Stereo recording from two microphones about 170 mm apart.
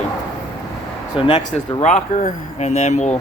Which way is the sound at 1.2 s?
30° left (ahead or behind).